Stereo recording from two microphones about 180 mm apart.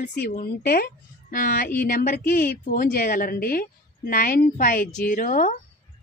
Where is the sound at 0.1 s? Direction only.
60° left (ahead or behind).